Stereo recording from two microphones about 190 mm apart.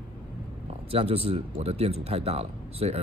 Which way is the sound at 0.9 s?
30° right (ahead or behind).